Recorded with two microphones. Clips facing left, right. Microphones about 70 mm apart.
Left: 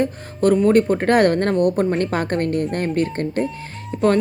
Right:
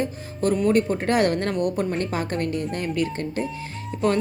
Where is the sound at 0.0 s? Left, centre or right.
Left.